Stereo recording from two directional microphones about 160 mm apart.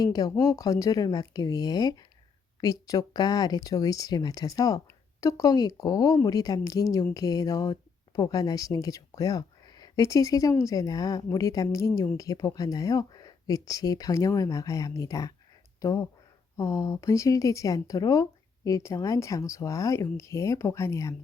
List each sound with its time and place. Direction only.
0.0 s a woman's voice: 25° left (ahead or behind)